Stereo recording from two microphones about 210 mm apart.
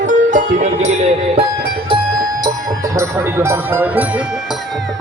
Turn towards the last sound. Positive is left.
turn(degrees=-10)  # may be behind; listen again after turning